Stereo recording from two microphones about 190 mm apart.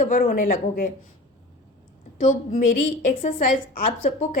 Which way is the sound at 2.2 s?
40° left (ahead or behind).